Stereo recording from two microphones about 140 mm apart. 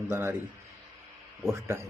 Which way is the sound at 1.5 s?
20° right (ahead or behind).